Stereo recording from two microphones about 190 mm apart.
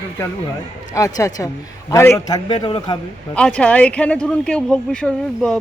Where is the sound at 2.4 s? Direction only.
25° left (ahead or behind).